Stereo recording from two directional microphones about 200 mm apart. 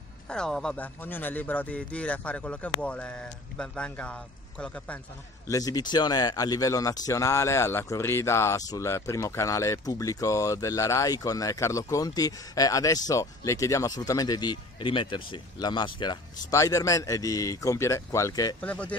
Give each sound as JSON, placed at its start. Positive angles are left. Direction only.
{"t": 0.3, "sound": "speech", "side_deg": 5}
{"t": 5.5, "sound": "speech", "side_deg": 20}
{"t": 18.6, "sound": "speech", "side_deg": 5}